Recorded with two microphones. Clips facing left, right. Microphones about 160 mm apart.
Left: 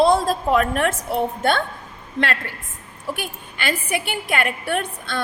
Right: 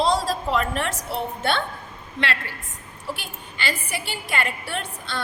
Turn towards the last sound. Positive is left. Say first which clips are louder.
# left 6 dB
turn(degrees=55)  # may be behind; listen again after turning